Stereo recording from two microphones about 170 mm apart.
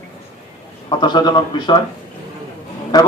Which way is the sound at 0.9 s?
25° left (ahead or behind).